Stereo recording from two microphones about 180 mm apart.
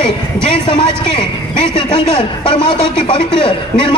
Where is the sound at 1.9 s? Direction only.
30° left (ahead or behind).